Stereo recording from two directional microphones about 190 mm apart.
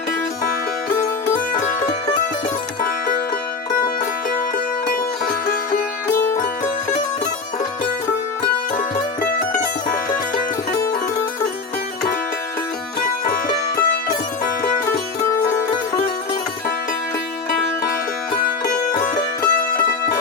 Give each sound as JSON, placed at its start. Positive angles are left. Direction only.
{"t": 6.1, "sound": "music", "side_deg": 10}
{"t": 9.2, "sound": "music", "side_deg": 45}
{"t": 13.2, "sound": "music", "side_deg": 45}
{"t": 19.0, "sound": "music", "side_deg": 45}